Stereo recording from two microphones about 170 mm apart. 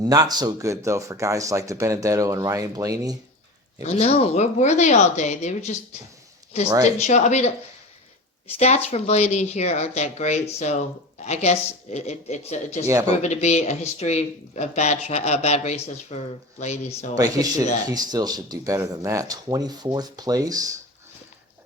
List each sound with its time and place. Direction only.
0.0 s speech: 20° right (ahead or behind)
3.8 s speech: 40° left (ahead or behind)
7.1 s speech: 40° left (ahead or behind)
8.5 s speech: 40° left (ahead or behind)
12.9 s speech: 20° right (ahead or behind)
13.2 s speech: 40° left (ahead or behind)
17.8 s speech: 20° right (ahead or behind)